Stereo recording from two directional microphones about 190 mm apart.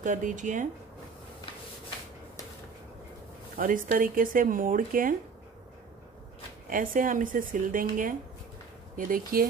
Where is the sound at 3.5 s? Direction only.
45° right (ahead or behind).